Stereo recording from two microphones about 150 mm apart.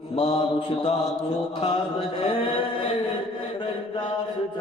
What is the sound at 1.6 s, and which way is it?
Mantra, 40° left (ahead or behind).